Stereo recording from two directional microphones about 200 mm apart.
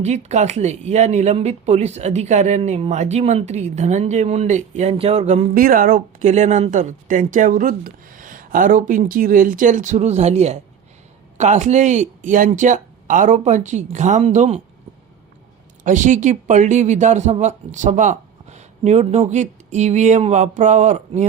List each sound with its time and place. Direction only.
0.0 s speech: 35° right (ahead or behind)
15.8 s speech: 40° right (ahead or behind)